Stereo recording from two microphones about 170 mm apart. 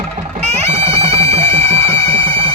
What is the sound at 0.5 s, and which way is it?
Music, 40° right (ahead or behind).